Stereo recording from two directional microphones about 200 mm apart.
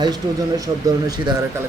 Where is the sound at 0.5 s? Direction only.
20° right (ahead or behind).